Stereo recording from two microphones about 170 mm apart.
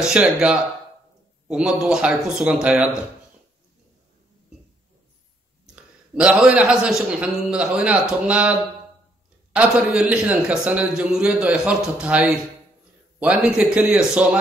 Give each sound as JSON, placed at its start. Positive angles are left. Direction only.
{"t": 0.0, "sound": "a man's voice", "side_deg": -5}
{"t": 5.8, "sound": "a man's voice", "side_deg": -5}